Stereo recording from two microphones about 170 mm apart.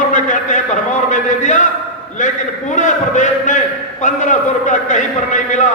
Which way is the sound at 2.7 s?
45° left (ahead or behind).